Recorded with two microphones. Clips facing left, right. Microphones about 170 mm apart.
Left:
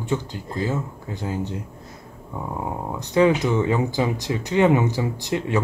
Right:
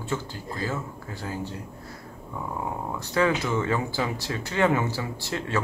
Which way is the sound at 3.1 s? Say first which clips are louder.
Left 6 dB; 20° left (ahead or behind).